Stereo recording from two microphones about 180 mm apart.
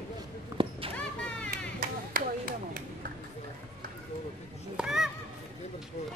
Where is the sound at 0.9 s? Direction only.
5° left (ahead or behind).